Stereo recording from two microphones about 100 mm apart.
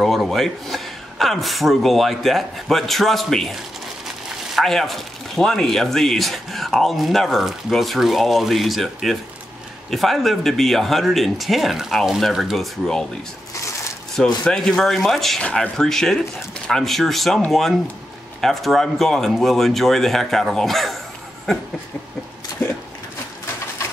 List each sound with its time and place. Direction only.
0.0 s speech: centre (ahead or behind)
4.6 s speech: centre (ahead or behind)
14.4 s speech: 5° left (ahead or behind)